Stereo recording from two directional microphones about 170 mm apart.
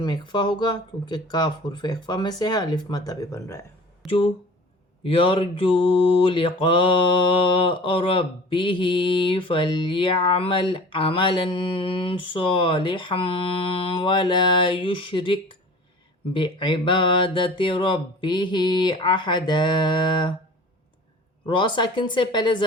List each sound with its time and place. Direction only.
0.0 s mantra: 25° left (ahead or behind)
4.0 s speech: 30° left (ahead or behind)
5.0 s a sound: 30° left (ahead or behind)
6.2 s mantra: 30° left (ahead or behind)
21.4 s mantra: 30° left (ahead or behind)